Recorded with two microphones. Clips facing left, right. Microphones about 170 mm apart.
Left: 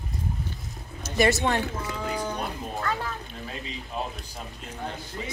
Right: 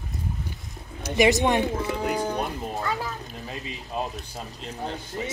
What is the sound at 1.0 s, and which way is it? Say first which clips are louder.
Speech: right 3 dB; 15° right (ahead or behind).